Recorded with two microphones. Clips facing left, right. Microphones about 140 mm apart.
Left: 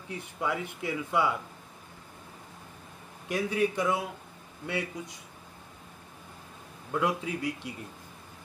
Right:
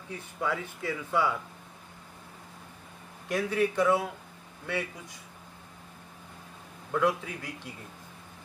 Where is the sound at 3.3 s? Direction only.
15° left (ahead or behind).